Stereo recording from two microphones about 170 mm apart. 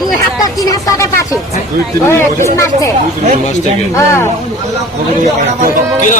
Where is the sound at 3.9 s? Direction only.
15° left (ahead or behind).